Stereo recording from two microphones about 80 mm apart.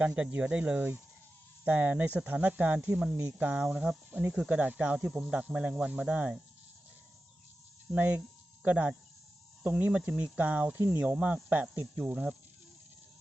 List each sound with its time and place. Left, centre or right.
0.0 s speech: centre
3.2 s speech: right
3.7 s speech: centre
7.9 s speech: centre